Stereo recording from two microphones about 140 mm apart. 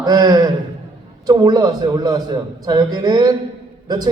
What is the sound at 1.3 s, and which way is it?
A man's voice, 30° right (ahead or behind).